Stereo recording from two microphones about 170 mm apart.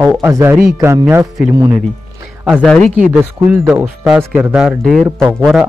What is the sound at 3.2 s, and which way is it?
A man's voice, 10° right (ahead or behind).